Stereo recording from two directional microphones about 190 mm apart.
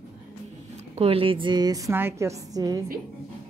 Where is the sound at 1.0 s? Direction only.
30° right (ahead or behind).